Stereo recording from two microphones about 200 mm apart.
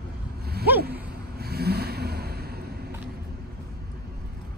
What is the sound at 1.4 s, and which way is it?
Vehicle, 50° right (ahead or behind).